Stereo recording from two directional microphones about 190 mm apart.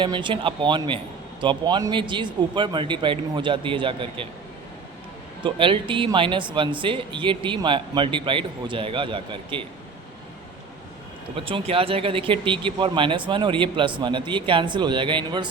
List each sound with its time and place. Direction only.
0.0 s speech: 25° right (ahead or behind)
5.4 s speech: 25° right (ahead or behind)
11.3 s speech: 30° right (ahead or behind)